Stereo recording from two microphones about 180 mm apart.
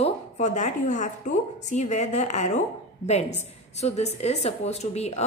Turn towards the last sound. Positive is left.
turn(degrees=35)  # may be behind; listen again after turning